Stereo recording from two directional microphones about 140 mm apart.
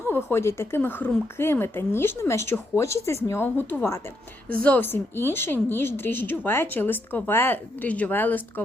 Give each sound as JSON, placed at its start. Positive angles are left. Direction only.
{"t": 0.1, "sound": "speech", "side_deg": 15}